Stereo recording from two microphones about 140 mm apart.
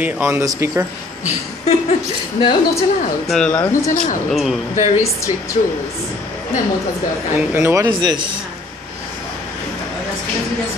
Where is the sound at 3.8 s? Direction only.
65° left (ahead or behind).